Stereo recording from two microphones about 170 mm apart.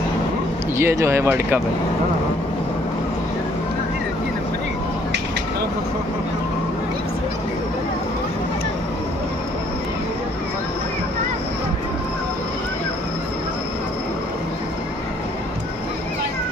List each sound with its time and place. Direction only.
0.7 s speech: 15° right (ahead or behind)